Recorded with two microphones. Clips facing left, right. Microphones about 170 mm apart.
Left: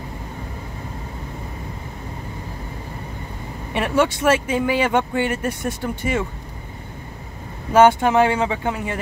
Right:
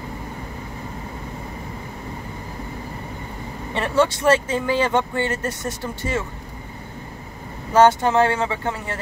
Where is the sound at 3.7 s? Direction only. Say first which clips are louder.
Even; 15° left (ahead or behind).